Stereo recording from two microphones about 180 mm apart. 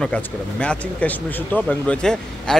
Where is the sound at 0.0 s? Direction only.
5° left (ahead or behind).